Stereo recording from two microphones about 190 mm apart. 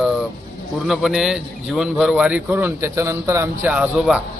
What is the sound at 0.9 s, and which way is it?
A man's voice, centre (ahead or behind).